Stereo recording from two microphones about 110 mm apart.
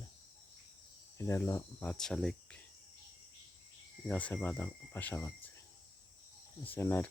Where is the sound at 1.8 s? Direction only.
5° left (ahead or behind).